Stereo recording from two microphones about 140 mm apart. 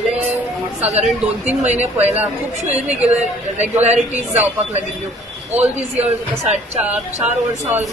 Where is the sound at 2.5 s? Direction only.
55° right (ahead or behind).